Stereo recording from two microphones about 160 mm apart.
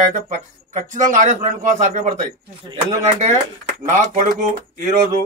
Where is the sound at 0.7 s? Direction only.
55° right (ahead or behind).